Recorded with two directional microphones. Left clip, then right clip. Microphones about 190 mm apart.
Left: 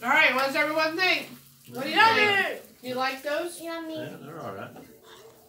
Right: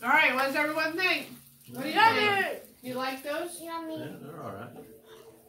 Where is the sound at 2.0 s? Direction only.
15° right (ahead or behind).